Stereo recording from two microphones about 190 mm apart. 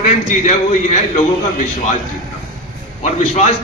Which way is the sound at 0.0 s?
40° left (ahead or behind).